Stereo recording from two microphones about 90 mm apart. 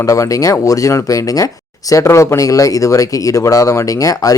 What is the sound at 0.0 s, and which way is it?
Speech, 35° left (ahead or behind).